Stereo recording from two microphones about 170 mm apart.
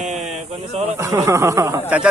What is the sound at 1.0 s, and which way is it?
Snicker, 15° right (ahead or behind).